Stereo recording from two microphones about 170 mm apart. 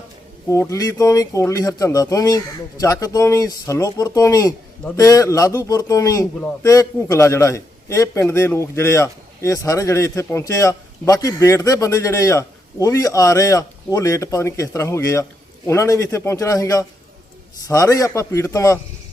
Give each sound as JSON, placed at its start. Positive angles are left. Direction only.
{"t": 0.4, "sound": "a man's voice", "side_deg": 20}